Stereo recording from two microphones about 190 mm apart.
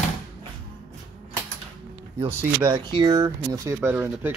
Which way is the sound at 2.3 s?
15° right (ahead or behind).